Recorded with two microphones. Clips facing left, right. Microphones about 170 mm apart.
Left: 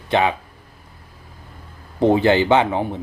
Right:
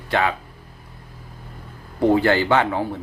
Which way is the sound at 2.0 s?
20° left (ahead or behind).